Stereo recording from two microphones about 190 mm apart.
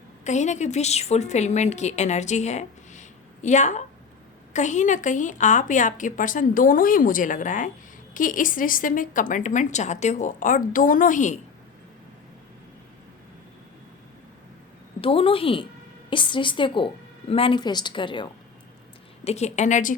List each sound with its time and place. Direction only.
0.3 s a woman's voice: 40° left (ahead or behind)
15.0 s a woman's voice: 30° left (ahead or behind)
19.2 s a woman's voice: 35° left (ahead or behind)